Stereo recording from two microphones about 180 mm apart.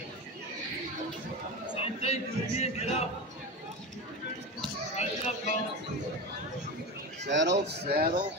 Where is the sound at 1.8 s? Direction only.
35° left (ahead or behind).